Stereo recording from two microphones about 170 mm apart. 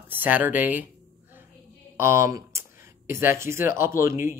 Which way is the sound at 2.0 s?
15° right (ahead or behind).